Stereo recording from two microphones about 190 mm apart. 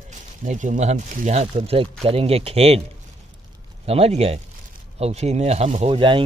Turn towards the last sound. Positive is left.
turn(degrees=-25)  # may be behind; listen again after turning